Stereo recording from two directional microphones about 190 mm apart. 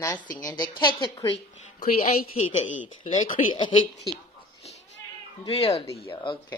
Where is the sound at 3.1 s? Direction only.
25° left (ahead or behind).